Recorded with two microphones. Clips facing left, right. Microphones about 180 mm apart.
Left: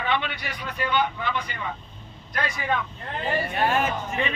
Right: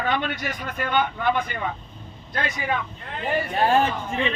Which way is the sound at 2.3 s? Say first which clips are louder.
Right 1 dB; 25° right (ahead or behind).